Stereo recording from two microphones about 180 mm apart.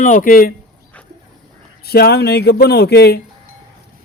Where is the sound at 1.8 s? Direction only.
60° left (ahead or behind).